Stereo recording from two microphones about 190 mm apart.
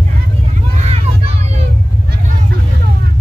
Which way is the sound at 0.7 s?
35° right (ahead or behind).